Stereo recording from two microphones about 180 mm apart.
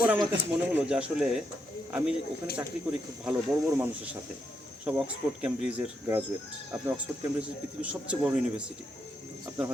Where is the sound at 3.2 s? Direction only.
10° right (ahead or behind).